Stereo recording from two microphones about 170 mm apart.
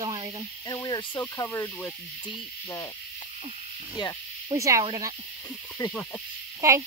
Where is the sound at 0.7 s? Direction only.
20° left (ahead or behind).